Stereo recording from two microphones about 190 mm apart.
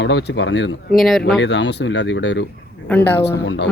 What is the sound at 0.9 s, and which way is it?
Speech, centre (ahead or behind).